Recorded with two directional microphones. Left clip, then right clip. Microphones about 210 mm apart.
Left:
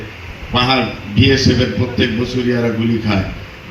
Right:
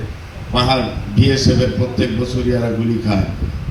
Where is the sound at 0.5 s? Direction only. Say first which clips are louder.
Left 2 dB; 55° right (ahead or behind).